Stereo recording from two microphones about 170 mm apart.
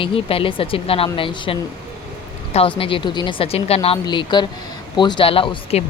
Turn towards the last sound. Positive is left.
turn(degrees=35)  # may be behind; listen again after turning